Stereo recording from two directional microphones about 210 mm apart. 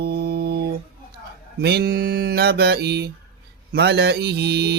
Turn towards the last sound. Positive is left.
turn(degrees=-50)  # may be behind; listen again after turning